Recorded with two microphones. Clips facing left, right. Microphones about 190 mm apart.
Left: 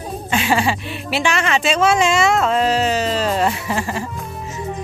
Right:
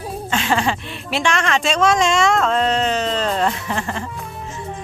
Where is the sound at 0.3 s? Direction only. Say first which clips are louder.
Left 2 dB; 10° left (ahead or behind).